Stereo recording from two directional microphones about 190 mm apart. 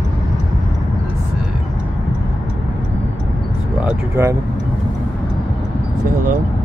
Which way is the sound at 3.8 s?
15° right (ahead or behind).